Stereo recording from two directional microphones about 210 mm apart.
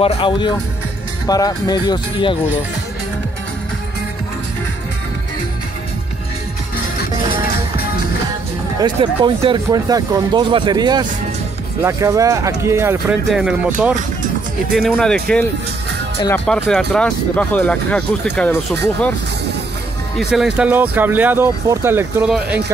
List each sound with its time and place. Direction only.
0.0 s speech: 25° left (ahead or behind)
8.8 s speech: 25° right (ahead or behind); by 15.4 s 5° left (ahead or behind)
16.4 s speech: 5° left (ahead or behind)
20.2 s speech: centre (ahead or behind)